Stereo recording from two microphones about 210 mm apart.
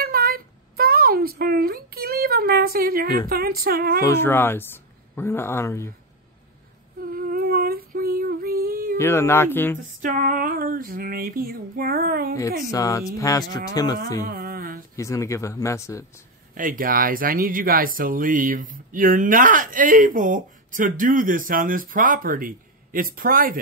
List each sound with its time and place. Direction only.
0.0 s a sound: 45° right (ahead or behind)
4.0 s speech: 10° left (ahead or behind)
7.2 s female singing: 45° right (ahead or behind)
8.9 s speech: 10° left (ahead or behind)
10.0 s female singing: 40° right (ahead or behind)
12.7 s speech: 15° left (ahead or behind)
14.2 s a sound: 45° right (ahead or behind)
15.0 s speech: 15° left (ahead or behind)
16.5 s speech: 40° right (ahead or behind)